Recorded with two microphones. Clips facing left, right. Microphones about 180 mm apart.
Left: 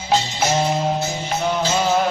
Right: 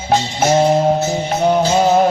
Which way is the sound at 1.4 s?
50° right (ahead or behind).